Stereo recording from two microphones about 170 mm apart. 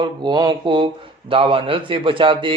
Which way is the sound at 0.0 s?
25° right (ahead or behind).